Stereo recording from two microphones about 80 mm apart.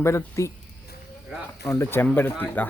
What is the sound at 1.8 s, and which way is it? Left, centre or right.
Speech, left.